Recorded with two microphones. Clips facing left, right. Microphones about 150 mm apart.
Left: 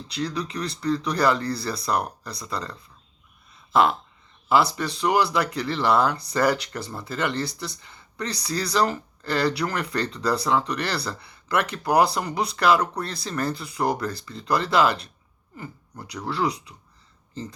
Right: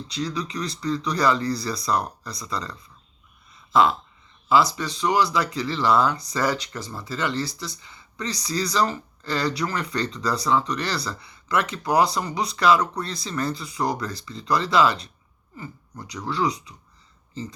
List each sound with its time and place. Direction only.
0.1 s speech: 60° left (ahead or behind)
3.5 s a sound: 60° left (ahead or behind)
4.4 s speech: 60° left (ahead or behind)
16.3 s speech: 60° left (ahead or behind)